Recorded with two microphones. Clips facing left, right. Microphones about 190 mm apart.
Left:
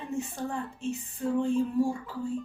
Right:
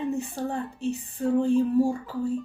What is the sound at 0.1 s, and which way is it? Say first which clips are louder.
A woman's voice: right 4 dB; 35° right (ahead or behind).